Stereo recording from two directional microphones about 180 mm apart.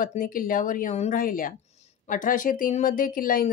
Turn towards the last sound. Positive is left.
turn(degrees=50)  # may be behind; listen again after turning